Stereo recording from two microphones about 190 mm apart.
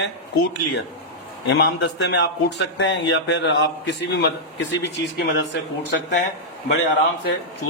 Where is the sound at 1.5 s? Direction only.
65° left (ahead or behind).